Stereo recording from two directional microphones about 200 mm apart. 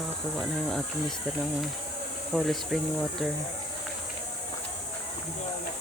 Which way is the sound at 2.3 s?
Centre (ahead or behind).